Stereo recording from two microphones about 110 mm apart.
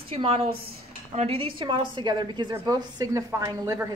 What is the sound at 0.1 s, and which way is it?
A woman's voice, 65° right (ahead or behind).